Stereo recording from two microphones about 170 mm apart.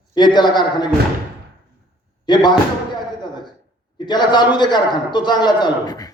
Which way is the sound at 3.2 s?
25° left (ahead or behind).